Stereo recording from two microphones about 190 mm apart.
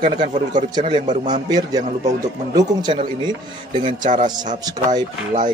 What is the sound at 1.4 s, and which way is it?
Speech, 20° right (ahead or behind).